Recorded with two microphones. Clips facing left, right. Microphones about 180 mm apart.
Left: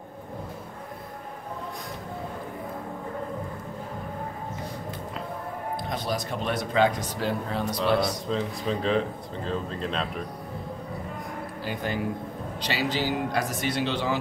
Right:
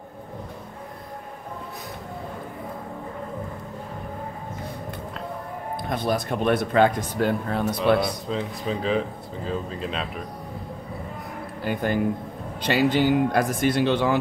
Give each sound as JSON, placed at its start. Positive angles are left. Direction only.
{"t": 5.9, "sound": "speech", "side_deg": -55}
{"t": 8.3, "sound": "speech", "side_deg": -5}
{"t": 11.6, "sound": "speech", "side_deg": -55}